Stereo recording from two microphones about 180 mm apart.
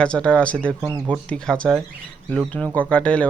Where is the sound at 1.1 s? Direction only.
5° left (ahead or behind).